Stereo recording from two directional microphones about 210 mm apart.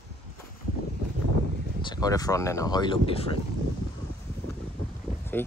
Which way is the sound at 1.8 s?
20° left (ahead or behind).